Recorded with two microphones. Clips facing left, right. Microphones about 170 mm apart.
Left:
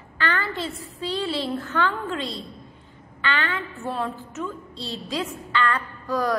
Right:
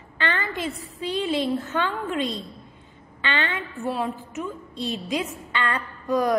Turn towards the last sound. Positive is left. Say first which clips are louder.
# right 2 dB
turn(degrees=-20)  # may be behind; listen again after turning